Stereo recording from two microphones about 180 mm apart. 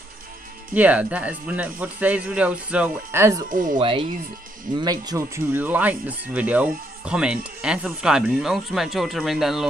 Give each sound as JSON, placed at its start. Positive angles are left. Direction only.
{"t": 0.7, "sound": "speech", "side_deg": -10}
{"t": 3.4, "sound": "speech", "side_deg": -50}
{"t": 3.7, "sound": "speech", "side_deg": -30}